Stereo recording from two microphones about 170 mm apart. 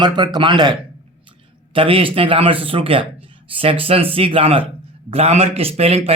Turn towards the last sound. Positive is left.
turn(degrees=-35)  # may be behind; listen again after turning